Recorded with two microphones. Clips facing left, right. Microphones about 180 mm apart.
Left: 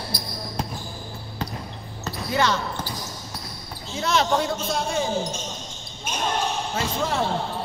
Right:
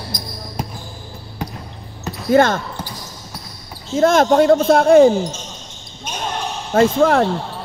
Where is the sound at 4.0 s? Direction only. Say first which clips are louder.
Right 10 dB; 50° right (ahead or behind).